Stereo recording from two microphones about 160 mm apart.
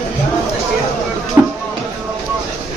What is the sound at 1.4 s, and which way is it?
Music, 15° right (ahead or behind).